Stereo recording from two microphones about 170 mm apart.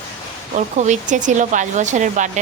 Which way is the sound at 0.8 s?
45° right (ahead or behind).